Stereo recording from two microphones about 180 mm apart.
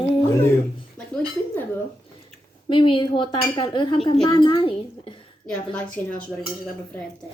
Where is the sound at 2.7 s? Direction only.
25° left (ahead or behind).